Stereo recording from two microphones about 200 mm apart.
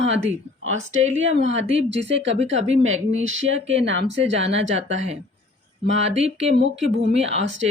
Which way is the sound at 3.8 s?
65° right (ahead or behind).